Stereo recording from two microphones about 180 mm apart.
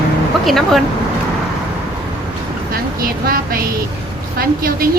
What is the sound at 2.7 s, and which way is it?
A woman's voice, 55° right (ahead or behind).